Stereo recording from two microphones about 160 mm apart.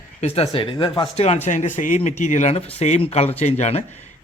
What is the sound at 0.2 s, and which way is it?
A man's voice, 40° left (ahead or behind).